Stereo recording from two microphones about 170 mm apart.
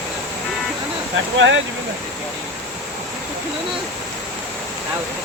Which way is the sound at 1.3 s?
90° right.